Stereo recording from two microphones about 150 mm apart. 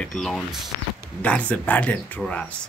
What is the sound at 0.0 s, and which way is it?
A man's voice, 5° left (ahead or behind).